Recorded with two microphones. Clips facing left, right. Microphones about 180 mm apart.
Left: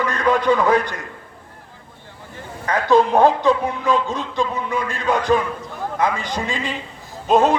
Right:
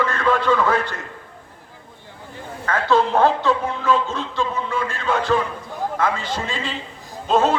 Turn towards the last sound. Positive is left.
turn(degrees=15)  # may be behind; listen again after turning